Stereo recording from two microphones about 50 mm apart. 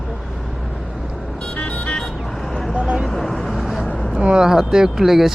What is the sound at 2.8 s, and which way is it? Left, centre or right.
Vehicle, right.